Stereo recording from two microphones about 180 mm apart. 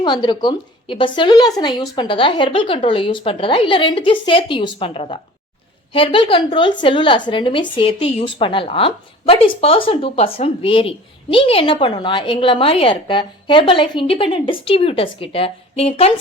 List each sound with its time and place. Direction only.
0.0 s a woman's voice: 25° left (ahead or behind)